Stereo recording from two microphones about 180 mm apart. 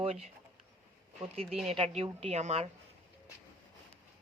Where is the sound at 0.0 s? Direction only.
35° right (ahead or behind).